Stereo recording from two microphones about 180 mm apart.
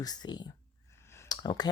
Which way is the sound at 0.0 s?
20° left (ahead or behind).